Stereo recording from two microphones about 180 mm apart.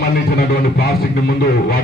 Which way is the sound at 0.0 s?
55° left (ahead or behind).